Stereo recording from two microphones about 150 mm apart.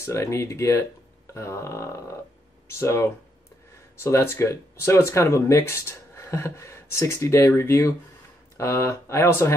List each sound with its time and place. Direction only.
0.0 s speech: 20° left (ahead or behind)